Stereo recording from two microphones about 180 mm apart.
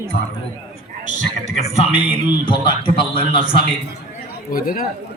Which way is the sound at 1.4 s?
35° left (ahead or behind).